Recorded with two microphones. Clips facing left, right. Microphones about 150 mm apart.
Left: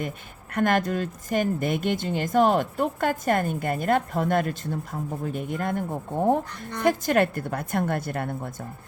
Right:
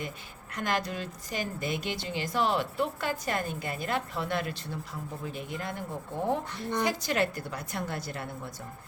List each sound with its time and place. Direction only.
0.5 s a woman's voice: 55° left (ahead or behind)